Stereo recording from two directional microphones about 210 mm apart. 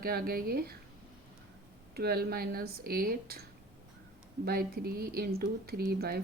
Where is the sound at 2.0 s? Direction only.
45° right (ahead or behind).